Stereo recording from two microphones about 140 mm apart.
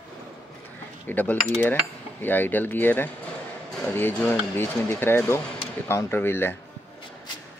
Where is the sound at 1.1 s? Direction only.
10° left (ahead or behind).